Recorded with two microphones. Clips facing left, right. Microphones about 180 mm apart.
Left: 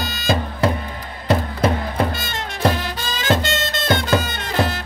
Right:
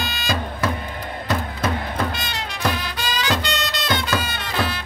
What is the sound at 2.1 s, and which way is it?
Music, 50° left (ahead or behind).